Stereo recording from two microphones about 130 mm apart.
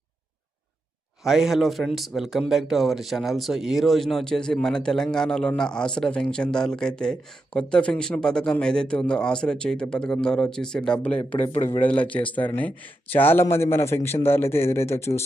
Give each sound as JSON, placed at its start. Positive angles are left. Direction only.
{"t": 1.2, "sound": "speech", "side_deg": 0}